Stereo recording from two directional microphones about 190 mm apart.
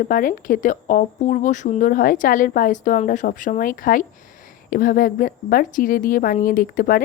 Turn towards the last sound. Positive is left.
turn(degrees=50)  # may be behind; listen again after turning